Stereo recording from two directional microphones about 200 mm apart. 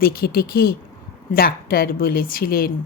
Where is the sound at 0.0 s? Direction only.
50° left (ahead or behind).